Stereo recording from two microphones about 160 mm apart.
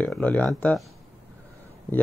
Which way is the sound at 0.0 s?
10° left (ahead or behind).